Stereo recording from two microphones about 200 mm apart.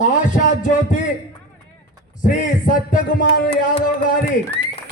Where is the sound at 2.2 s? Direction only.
40° left (ahead or behind).